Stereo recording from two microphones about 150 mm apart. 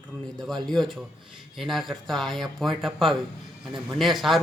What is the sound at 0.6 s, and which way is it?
Speech, 5° left (ahead or behind).